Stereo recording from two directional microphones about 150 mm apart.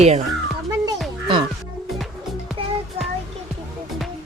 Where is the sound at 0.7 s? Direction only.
25° right (ahead or behind).